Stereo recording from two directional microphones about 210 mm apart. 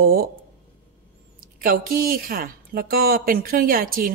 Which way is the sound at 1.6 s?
45° right (ahead or behind).